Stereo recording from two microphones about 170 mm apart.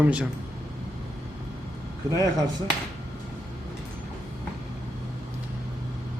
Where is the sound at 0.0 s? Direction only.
5° right (ahead or behind).